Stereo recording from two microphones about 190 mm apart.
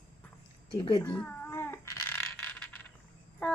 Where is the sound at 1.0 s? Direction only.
10° left (ahead or behind).